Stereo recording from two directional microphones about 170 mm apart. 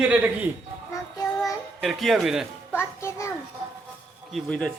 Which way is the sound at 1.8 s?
Centre (ahead or behind).